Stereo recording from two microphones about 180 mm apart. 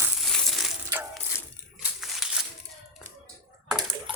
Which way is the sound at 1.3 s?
15° left (ahead or behind).